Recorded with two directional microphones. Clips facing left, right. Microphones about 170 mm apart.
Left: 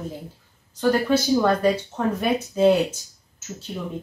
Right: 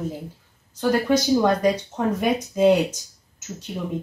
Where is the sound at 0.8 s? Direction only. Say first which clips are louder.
Even; 15° right (ahead or behind).